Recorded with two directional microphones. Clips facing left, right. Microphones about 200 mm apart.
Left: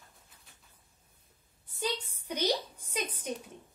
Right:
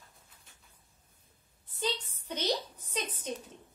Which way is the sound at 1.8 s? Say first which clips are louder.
Even; 10° left (ahead or behind).